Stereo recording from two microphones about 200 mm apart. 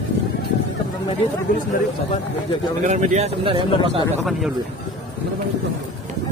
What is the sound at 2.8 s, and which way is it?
A man's voice, 35° right (ahead or behind).